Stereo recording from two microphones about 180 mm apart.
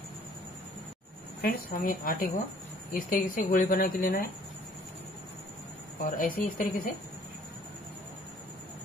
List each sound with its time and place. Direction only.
1.4 s speech: 50° left (ahead or behind)
6.1 s speech: 50° left (ahead or behind)